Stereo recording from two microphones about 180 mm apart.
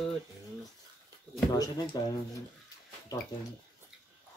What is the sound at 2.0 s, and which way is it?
Speech, 20° left (ahead or behind).